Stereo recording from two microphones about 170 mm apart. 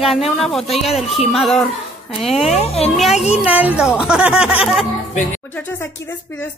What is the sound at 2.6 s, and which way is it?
Speech, 35° left (ahead or behind).